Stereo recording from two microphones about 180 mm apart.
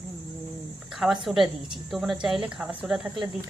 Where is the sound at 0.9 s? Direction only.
Centre (ahead or behind).